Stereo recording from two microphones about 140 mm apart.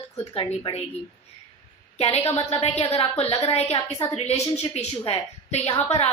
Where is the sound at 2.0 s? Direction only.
45° left (ahead or behind).